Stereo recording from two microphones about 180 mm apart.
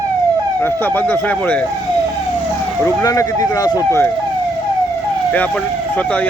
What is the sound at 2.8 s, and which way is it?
Speech, 20° left (ahead or behind).